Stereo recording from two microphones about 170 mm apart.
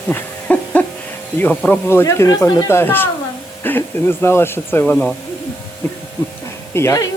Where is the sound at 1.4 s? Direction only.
10° left (ahead or behind).